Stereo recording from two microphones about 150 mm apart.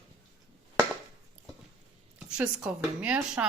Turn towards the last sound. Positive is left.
turn(degrees=-10)  # may be behind; listen again after turning